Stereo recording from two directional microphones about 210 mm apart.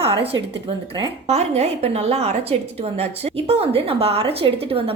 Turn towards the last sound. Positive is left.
turn(degrees=-25)  # may be behind; listen again after turning